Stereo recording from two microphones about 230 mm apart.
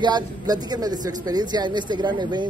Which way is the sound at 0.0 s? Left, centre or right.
Centre.